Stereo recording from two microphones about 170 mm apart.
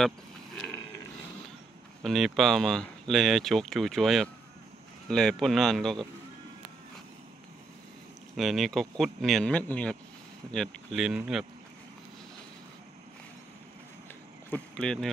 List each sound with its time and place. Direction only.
2.0 s speech: centre (ahead or behind)
8.4 s speech: centre (ahead or behind)
14.5 s speech: 5° left (ahead or behind)